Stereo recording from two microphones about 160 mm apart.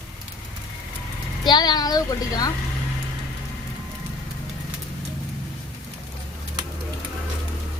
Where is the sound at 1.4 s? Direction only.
25° left (ahead or behind).